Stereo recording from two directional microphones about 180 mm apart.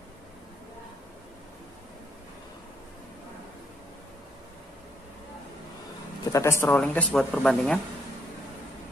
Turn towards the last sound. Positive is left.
turn(degrees=5)  # may be behind; listen again after turning